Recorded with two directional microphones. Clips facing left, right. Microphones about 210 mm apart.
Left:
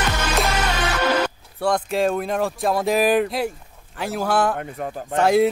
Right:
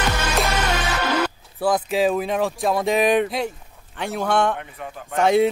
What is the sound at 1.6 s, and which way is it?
Speech, 5° right (ahead or behind).